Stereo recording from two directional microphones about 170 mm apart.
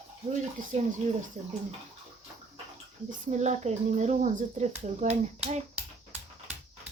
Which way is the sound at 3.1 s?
45° right (ahead or behind).